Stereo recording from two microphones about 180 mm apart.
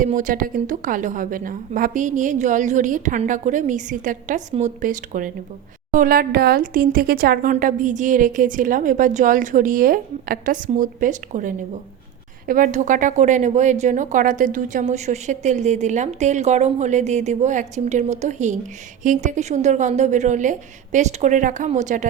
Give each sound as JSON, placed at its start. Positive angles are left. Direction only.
{"t": 0.0, "sound": "speech", "side_deg": -45}